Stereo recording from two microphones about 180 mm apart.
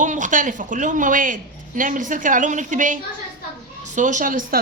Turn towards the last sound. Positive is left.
turn(degrees=-50)  # may be behind; listen again after turning